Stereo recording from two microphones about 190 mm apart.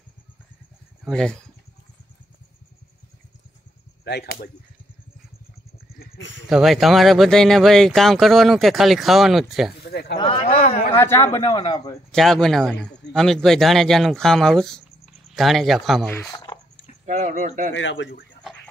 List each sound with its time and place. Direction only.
1.0 s speech: 5° left (ahead or behind)
4.0 s whip: 55° left (ahead or behind)
5.9 s a sound: 70° left (ahead or behind)
6.5 s speech: centre (ahead or behind)
9.8 s a sound: 60° left (ahead or behind)
10.1 s speech: 25° left (ahead or behind)
10.4 s a sound: 35° left (ahead or behind)
11.0 s a man's voice: 15° left (ahead or behind)
12.1 s speech: centre (ahead or behind)
17.0 s speech: 40° right (ahead or behind)
17.7 s speech: 75° left (ahead or behind)